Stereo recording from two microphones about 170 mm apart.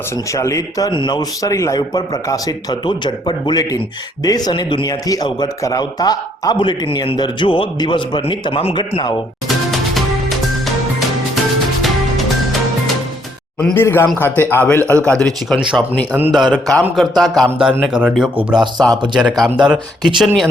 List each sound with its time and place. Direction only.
0.3 s speech: 20° left (ahead or behind)
9.7 s music: centre (ahead or behind)
13.6 s a man's voice: 5° left (ahead or behind)
16.1 s speech: 5° right (ahead or behind)
18.5 s speech: 25° right (ahead or behind)
19.1 s speech: 5° right (ahead or behind)